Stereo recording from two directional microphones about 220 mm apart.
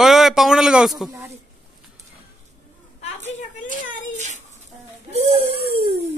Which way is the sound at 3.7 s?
30° right (ahead or behind).